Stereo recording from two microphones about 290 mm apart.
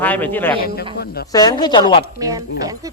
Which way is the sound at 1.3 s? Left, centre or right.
Centre.